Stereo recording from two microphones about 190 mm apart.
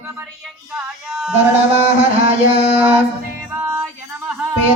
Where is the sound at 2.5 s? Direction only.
35° right (ahead or behind).